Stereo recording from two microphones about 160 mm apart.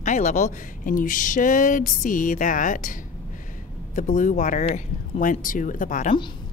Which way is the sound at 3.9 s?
50° left (ahead or behind).